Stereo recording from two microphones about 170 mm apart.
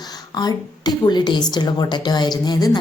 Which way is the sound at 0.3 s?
25° left (ahead or behind).